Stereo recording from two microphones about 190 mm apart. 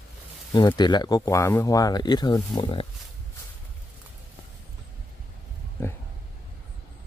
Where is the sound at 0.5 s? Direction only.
20° left (ahead or behind).